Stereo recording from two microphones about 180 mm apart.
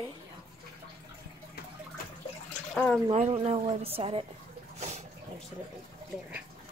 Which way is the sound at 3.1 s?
35° right (ahead or behind).